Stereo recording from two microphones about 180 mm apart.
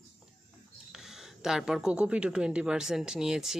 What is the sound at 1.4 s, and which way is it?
Speech, 5° right (ahead or behind).